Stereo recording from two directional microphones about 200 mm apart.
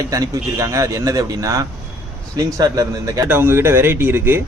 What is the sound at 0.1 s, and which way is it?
A man's voice, 15° right (ahead or behind).